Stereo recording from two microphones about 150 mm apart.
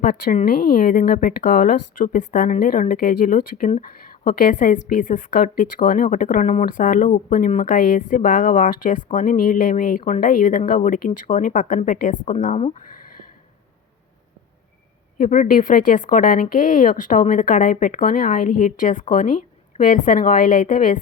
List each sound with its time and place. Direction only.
0.0 s a woman's voice: 65° left (ahead or behind); by 12.7 s 50° left (ahead or behind)
15.2 s a woman's voice: 60° left (ahead or behind)